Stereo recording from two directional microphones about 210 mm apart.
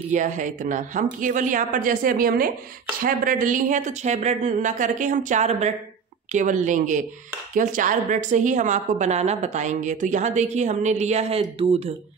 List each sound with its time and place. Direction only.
0.1 s a woman's voice: 35° right (ahead or behind)